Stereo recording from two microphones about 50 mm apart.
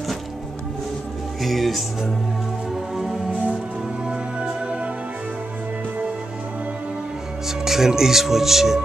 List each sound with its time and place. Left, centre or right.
1.4 s speech: centre
2.7 s music: centre
4.1 s music: right
7.4 s speech: centre